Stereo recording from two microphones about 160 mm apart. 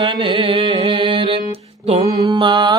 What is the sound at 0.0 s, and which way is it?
Mantra, 30° right (ahead or behind).